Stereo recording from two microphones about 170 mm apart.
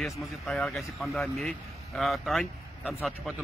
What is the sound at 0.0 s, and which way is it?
Speech, 5° left (ahead or behind).